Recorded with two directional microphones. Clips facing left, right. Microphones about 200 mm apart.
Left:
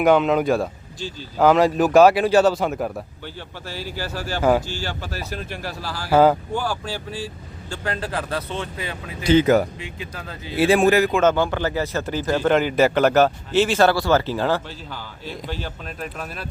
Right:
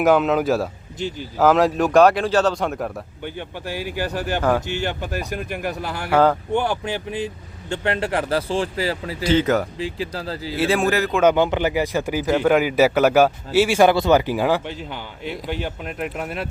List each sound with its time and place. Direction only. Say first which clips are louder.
0.0 s speech: even; 5° right (ahead or behind)
3.2 s speech: right 5 dB; 15° right (ahead or behind)
4.4 s speech: left 2 dB; 10° left (ahead or behind)
4.9 s speech: right 4 dB; 15° right (ahead or behind)
6.1 s speech: left 2 dB; 5° left (ahead or behind)
6.5 s speech: right 4 dB; 20° right (ahead or behind)
9.3 s speech: left 3 dB; 10° left (ahead or behind)
9.7 s speech: right 7 dB; 35° right (ahead or behind)
10.6 s speech: left 4 dB; 15° left (ahead or behind)
11.2 s speech: right 2 dB; 15° right (ahead or behind)